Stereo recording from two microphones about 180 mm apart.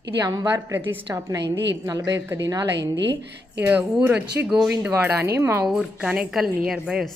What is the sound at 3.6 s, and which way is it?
Speech, 10° right (ahead or behind).